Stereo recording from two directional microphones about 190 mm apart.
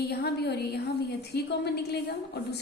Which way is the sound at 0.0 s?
60° left (ahead or behind).